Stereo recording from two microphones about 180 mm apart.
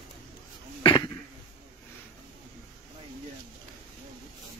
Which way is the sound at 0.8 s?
25° left (ahead or behind).